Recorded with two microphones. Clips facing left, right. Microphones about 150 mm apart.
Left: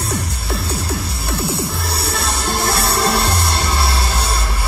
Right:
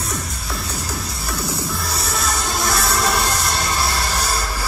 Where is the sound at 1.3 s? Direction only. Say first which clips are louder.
Left 4 dB; 30° left (ahead or behind).